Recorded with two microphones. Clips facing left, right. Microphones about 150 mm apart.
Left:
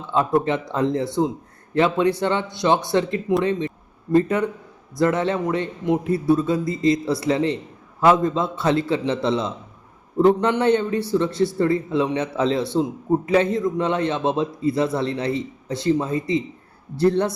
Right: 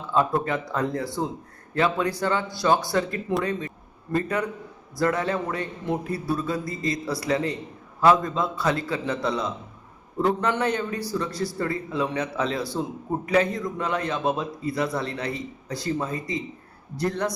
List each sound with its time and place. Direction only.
0.1 s a man's voice: 25° left (ahead or behind)